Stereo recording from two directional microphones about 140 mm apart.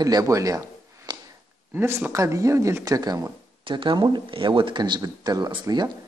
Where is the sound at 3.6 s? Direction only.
35° right (ahead or behind).